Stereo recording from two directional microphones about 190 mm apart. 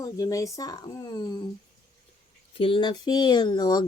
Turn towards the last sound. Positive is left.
turn(degrees=20)  # may be behind; listen again after turning